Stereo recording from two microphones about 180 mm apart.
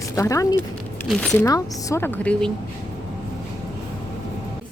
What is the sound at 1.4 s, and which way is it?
A woman's voice, 20° left (ahead or behind).